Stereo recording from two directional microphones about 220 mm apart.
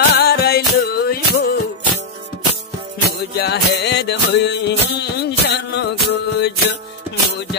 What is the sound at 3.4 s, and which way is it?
Music, 50° left (ahead or behind).